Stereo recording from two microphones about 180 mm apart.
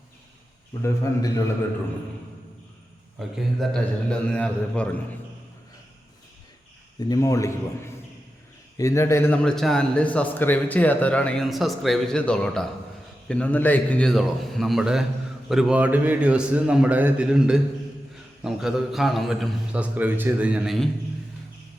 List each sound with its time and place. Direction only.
0.7 s a man's voice: 20° left (ahead or behind)
3.2 s a man's voice: centre (ahead or behind)
7.1 s a man's voice: 15° left (ahead or behind)
8.8 s a man's voice: 15° left (ahead or behind); by 20.9 s centre (ahead or behind)